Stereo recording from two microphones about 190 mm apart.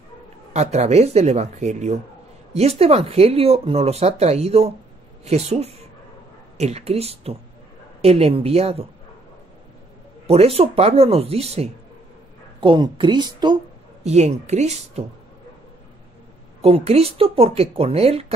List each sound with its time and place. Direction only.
0.5 s speech: 35° right (ahead or behind)
10.2 s speech: 30° right (ahead or behind)
14.0 s speech: 35° right (ahead or behind)
16.6 s speech: 30° right (ahead or behind)